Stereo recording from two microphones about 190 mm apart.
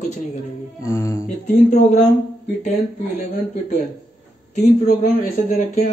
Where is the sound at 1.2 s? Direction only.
40° left (ahead or behind).